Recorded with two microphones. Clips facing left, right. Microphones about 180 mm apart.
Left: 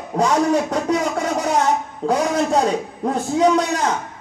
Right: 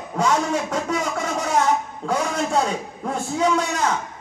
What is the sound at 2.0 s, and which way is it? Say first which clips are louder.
A man's voice: left 7 dB; 35° left (ahead or behind).